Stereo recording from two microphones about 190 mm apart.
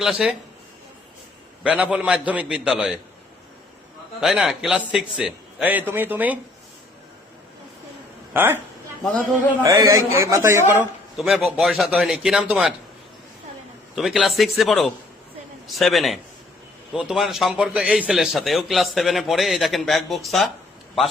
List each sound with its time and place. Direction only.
0.0 s a man's voice: 5° right (ahead or behind)
1.6 s a man's voice: 5° right (ahead or behind)
4.2 s a man's voice: centre (ahead or behind)
8.3 s a woman's voice: 10° right (ahead or behind)
9.6 s a man's voice: 15° right (ahead or behind)
13.9 s a man's voice: centre (ahead or behind)